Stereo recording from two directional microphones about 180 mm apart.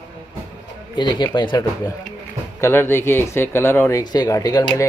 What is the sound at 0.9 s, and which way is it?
Speech, 25° left (ahead or behind).